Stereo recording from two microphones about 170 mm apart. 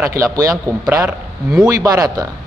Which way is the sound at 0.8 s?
5° right (ahead or behind).